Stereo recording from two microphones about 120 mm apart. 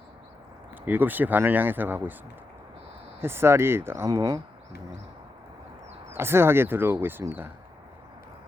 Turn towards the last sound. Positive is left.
turn(degrees=-20)  # may be behind; listen again after turning